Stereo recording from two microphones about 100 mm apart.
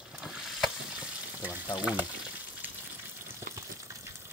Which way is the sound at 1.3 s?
20° right (ahead or behind).